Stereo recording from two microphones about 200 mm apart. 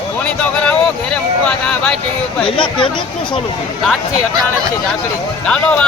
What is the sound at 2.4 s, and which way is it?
Speech, 25° left (ahead or behind).